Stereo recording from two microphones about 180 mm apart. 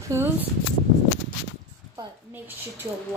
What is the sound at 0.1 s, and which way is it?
Speech, 15° right (ahead or behind).